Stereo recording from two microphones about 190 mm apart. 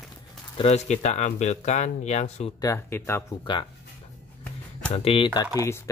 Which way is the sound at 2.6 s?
15° left (ahead or behind).